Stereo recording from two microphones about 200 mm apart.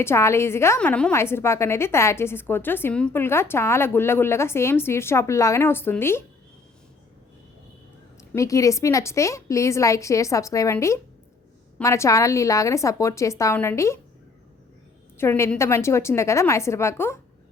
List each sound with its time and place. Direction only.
0.0 s a woman's voice: 15° left (ahead or behind)
8.2 s a woman's voice: 15° left (ahead or behind)
15.2 s a woman's voice: 10° left (ahead or behind)